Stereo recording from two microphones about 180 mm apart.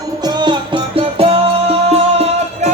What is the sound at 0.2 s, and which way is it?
Music, 25° right (ahead or behind).